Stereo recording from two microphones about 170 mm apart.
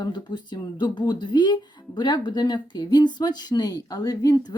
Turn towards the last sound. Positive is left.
turn(degrees=20)  # may be behind; listen again after turning